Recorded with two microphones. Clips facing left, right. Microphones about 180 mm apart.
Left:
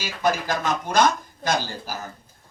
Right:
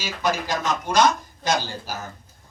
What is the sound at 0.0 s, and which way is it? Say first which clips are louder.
Speech: left 1 dB; 50° left (ahead or behind).